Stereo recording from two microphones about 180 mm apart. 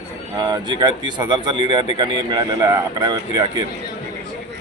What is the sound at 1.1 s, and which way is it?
A man's voice, 25° right (ahead or behind).